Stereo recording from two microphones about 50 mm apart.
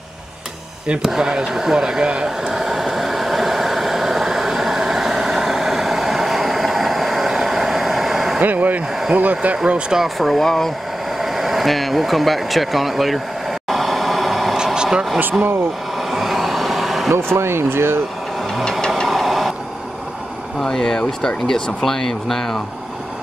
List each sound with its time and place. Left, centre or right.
1.0 s speech: centre
2.2 s vehicle: centre
8.4 s speech: right
9.7 s speech: centre
10.0 s speech: centre
11.1 s vehicle: centre
14.6 s a sound: centre
16.0 s vehicle: centre
17.1 s speech: right
18.6 s engine: centre
19.0 s vehicle: centre
20.6 s speech: centre